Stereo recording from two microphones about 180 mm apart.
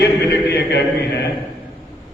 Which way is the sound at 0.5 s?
65° left (ahead or behind).